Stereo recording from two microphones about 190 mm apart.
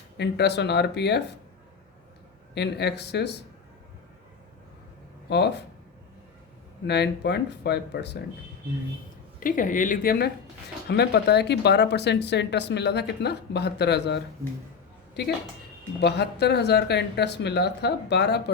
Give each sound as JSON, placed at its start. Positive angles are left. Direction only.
{"t": 0.2, "sound": "speech", "side_deg": 60}
{"t": 2.6, "sound": "speech", "side_deg": 60}
{"t": 5.3, "sound": "speech", "side_deg": 60}
{"t": 6.8, "sound": "speech", "side_deg": 60}
{"t": 9.4, "sound": "a woman's voice", "side_deg": 45}
{"t": 14.4, "sound": "speech", "side_deg": -15}
{"t": 15.2, "sound": "speech", "side_deg": 60}